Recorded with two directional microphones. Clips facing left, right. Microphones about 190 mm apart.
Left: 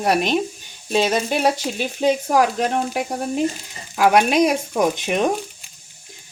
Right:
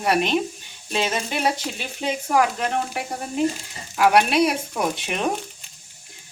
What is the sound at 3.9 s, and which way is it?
Speech, 45° left (ahead or behind).